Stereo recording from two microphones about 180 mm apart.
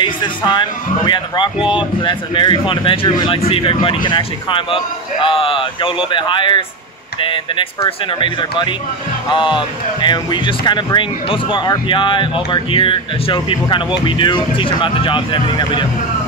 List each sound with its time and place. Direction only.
0.0 s speech: 25° left (ahead or behind)